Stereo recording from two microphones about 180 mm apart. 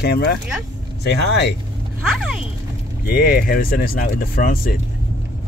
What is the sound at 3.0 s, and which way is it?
Speech, 55° left (ahead or behind).